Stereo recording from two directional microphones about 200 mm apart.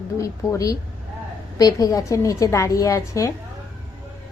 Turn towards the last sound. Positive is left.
turn(degrees=15)  # may be behind; listen again after turning